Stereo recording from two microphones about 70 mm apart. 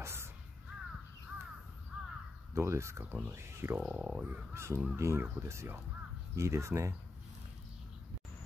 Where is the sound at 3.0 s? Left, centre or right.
Right.